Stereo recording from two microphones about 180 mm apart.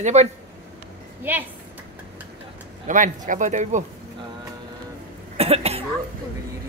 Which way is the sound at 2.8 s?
45° right (ahead or behind).